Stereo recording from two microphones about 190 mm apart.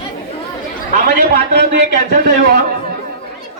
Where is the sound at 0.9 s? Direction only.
50° right (ahead or behind).